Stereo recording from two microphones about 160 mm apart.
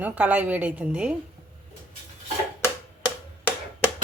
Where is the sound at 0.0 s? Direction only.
10° right (ahead or behind).